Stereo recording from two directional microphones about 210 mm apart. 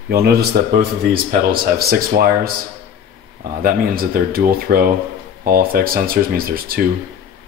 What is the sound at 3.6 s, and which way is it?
Speech, 45° right (ahead or behind).